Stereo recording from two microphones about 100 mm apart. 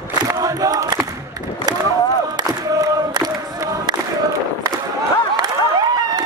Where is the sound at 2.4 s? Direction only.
40° right (ahead or behind).